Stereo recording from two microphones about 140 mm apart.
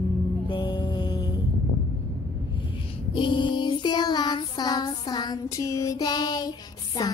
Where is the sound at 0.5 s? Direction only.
35° left (ahead or behind).